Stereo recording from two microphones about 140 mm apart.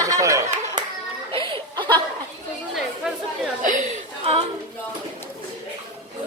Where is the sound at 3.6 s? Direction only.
65° right (ahead or behind).